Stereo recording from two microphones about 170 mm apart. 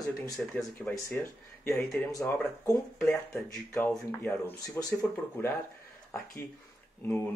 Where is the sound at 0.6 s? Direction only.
10° left (ahead or behind).